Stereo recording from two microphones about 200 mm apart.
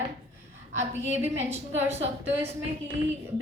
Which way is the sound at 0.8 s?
10° right (ahead or behind).